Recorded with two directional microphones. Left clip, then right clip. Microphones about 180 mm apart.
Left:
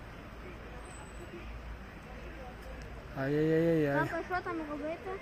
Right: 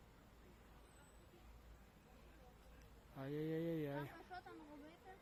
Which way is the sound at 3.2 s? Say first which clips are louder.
Left 16 dB; 25° right (ahead or behind).